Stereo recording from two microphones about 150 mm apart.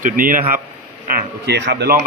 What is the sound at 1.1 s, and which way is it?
Speech, 85° right.